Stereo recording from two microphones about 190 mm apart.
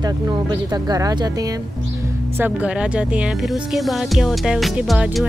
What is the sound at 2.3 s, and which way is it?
Speech, 10° right (ahead or behind).